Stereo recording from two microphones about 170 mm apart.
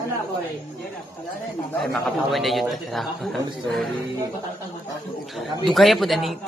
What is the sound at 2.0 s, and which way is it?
A man's voice, centre (ahead or behind).